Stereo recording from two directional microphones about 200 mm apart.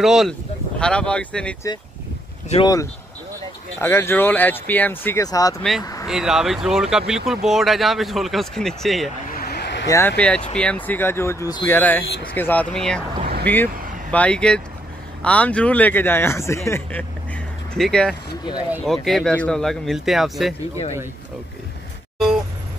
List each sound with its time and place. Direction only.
0.0 s speech: centre (ahead or behind)
2.5 s speech: 20° left (ahead or behind)
5.6 s speech: centre (ahead or behind)
9.4 s a sound: 55° left (ahead or behind)
9.8 s speech: 10° left (ahead or behind)
13.2 s vehicle: 50° right (ahead or behind)
14.1 s speech: 5° left (ahead or behind)